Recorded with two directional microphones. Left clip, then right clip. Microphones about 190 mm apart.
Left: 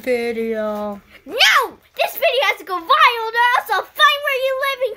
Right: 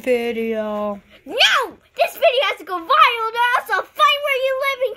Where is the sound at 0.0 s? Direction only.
10° right (ahead or behind).